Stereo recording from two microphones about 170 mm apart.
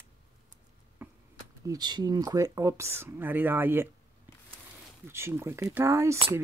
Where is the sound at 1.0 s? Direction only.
10° right (ahead or behind).